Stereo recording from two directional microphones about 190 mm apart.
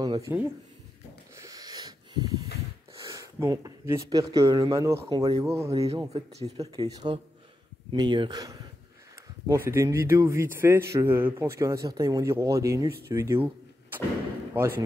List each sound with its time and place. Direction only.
0.0 s speech: 20° right (ahead or behind)
1.3 s a sound: 15° right (ahead or behind)
2.9 s speech: 15° right (ahead or behind)
5.8 s speech: 30° right (ahead or behind)
6.5 s speech: 20° right (ahead or behind)
9.7 s a man's voice: 15° right (ahead or behind)